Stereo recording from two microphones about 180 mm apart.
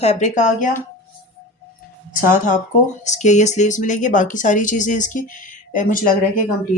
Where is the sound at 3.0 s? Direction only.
40° left (ahead or behind).